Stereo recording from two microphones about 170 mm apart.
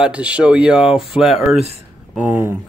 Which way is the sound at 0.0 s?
5° right (ahead or behind).